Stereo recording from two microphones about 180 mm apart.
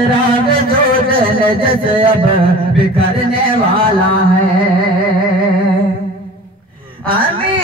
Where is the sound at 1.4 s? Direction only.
30° right (ahead or behind).